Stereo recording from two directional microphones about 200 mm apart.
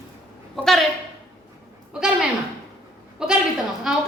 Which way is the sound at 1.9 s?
5° right (ahead or behind).